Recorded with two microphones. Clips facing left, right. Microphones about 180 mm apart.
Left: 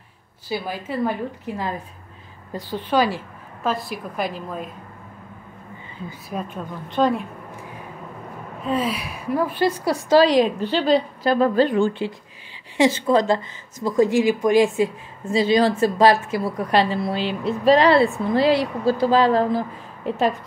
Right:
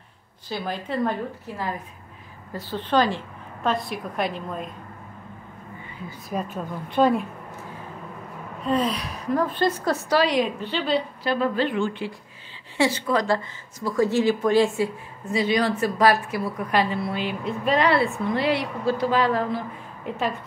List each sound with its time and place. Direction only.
0.5 s a woman's voice: 10° left (ahead or behind)
2.5 s a woman's voice: 10° left (ahead or behind)
6.3 s a woman's voice: 5° right (ahead or behind)
8.6 s a woman's voice: 5° left (ahead or behind)
10.1 s a woman's voice: 35° left (ahead or behind)
12.7 s a woman's voice: 20° left (ahead or behind)
15.2 s a woman's voice: 30° left (ahead or behind)